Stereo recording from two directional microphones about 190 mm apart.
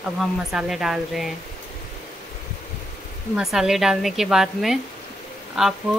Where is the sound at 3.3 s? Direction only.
Centre (ahead or behind).